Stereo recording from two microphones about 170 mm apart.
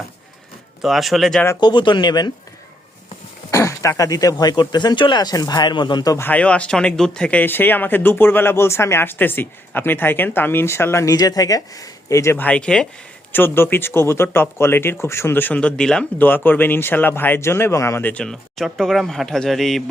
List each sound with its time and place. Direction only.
0.8 s speech: centre (ahead or behind)
1.6 s speech: 30° left (ahead or behind)
3.5 s speech: 15° left (ahead or behind); by 19.8 s centre (ahead or behind)